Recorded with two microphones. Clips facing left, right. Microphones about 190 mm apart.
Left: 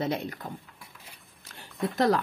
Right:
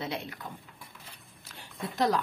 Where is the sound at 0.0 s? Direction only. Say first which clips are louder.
Left 6 dB; 40° left (ahead or behind).